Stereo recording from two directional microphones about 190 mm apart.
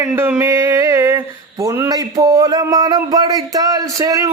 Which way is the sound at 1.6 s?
15° right (ahead or behind).